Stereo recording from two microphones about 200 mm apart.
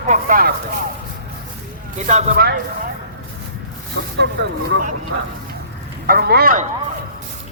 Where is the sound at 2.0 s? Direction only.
35° right (ahead or behind).